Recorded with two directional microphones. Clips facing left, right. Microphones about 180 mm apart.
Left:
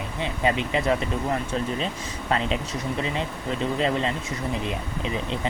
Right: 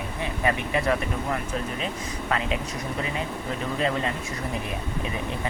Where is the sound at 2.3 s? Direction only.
30° left (ahead or behind).